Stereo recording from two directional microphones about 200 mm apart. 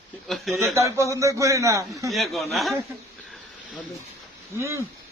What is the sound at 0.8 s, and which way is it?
A man's voice, 15° right (ahead or behind).